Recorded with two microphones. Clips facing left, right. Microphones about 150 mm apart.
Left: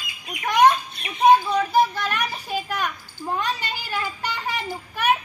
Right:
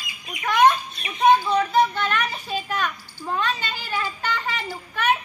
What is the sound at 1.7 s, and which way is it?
A child's voice, 10° left (ahead or behind).